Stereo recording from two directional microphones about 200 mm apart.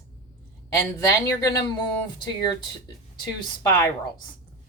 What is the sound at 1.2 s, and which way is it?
Speech, 15° left (ahead or behind).